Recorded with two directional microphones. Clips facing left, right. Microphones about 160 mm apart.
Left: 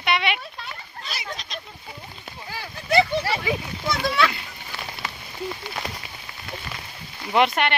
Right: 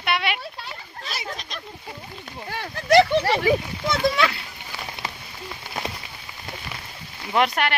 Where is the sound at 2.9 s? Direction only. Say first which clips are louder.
Right 5 dB; 80° right.